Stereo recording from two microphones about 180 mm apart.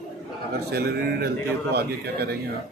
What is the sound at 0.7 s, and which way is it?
A man's voice, 65° right (ahead or behind).